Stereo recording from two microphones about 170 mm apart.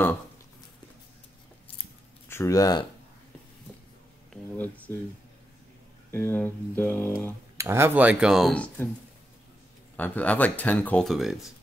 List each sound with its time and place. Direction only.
2.2 s speech: 15° left (ahead or behind)
4.3 s a sound: 10° left (ahead or behind)
6.1 s speech: 10° left (ahead or behind)
7.5 s speech: 15° right (ahead or behind); by 8.9 s 10° left (ahead or behind)
9.9 s speech: 10° left (ahead or behind)